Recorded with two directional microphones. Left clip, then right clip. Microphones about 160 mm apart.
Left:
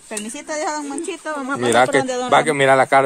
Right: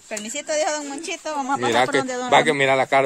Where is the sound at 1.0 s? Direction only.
90° right.